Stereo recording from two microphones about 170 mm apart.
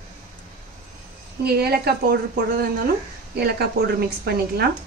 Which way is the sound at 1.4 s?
70° right (ahead or behind).